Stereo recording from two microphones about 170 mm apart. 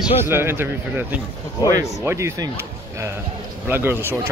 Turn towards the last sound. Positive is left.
turn(degrees=-10)  # may be behind; listen again after turning